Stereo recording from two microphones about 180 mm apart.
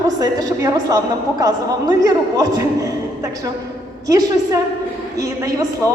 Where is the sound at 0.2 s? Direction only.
20° right (ahead or behind).